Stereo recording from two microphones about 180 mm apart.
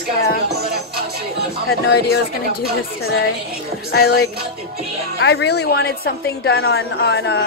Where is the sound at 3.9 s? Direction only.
65° left (ahead or behind); by 7.4 s 80° left.